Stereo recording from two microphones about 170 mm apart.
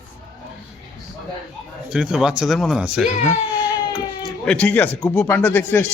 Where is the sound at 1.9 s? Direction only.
5° right (ahead or behind).